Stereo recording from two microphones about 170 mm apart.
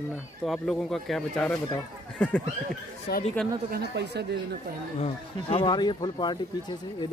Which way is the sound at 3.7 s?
80° right.